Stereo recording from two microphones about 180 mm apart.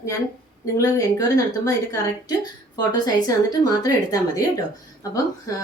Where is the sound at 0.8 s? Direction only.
20° left (ahead or behind).